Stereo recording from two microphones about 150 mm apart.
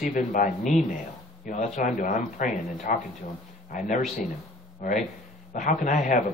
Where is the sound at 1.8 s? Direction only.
60° left (ahead or behind).